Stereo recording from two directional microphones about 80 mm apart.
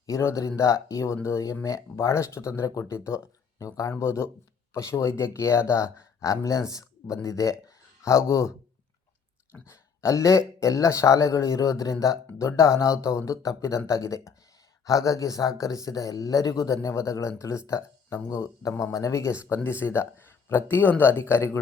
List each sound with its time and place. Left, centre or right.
0.2 s speech: left